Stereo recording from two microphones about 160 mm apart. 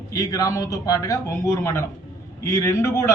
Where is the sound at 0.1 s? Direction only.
20° left (ahead or behind).